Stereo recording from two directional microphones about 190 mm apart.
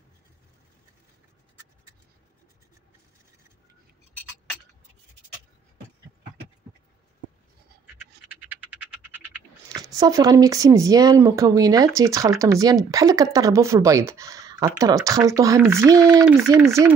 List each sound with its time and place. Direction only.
8.3 s speech: 10° right (ahead or behind)